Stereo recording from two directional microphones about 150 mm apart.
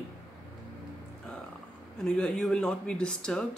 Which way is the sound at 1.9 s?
5° left (ahead or behind).